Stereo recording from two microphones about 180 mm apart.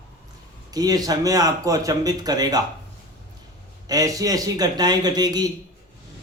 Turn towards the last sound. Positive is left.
turn(degrees=-20)  # may be behind; listen again after turning